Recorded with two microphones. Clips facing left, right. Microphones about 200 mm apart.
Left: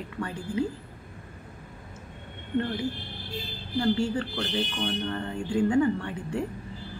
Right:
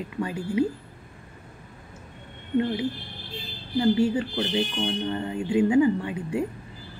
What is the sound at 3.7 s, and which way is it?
A woman's voice, 20° right (ahead or behind).